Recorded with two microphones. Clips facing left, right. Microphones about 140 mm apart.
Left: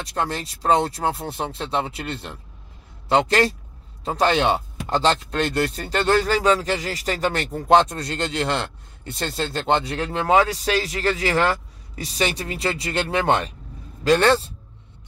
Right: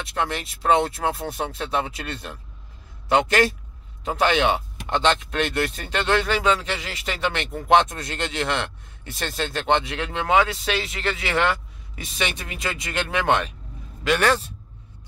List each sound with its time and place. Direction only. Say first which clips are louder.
0.0 s speech: left 1 dB; 35° left (ahead or behind)